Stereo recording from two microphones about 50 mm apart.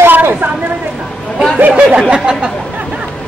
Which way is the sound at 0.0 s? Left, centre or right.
Right.